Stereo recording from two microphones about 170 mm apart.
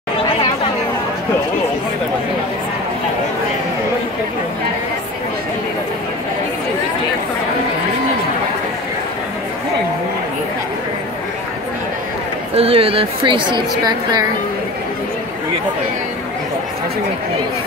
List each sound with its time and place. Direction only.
12.5 s a woman's voice: 35° right (ahead or behind)